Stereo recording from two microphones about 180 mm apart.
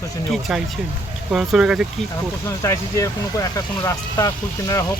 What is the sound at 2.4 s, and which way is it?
Speech, 15° left (ahead or behind).